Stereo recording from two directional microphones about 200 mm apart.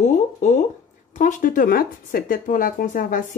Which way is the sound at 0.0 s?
35° left (ahead or behind).